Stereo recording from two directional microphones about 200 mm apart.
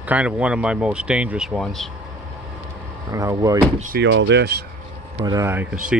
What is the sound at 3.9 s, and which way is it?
Speech, 65° right (ahead or behind).